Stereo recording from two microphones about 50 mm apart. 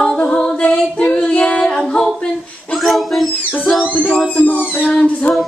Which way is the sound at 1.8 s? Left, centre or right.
Centre.